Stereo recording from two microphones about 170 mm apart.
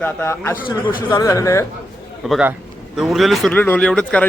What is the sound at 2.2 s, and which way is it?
A man's voice, centre (ahead or behind).